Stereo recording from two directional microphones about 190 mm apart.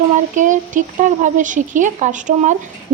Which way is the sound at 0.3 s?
40° right (ahead or behind).